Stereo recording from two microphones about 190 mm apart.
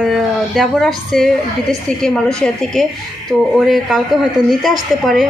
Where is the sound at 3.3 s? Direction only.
Centre (ahead or behind).